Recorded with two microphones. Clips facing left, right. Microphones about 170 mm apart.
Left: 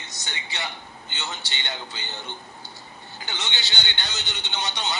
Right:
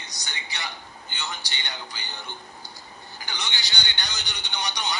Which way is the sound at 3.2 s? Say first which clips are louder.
Left 2 dB; 25° left (ahead or behind).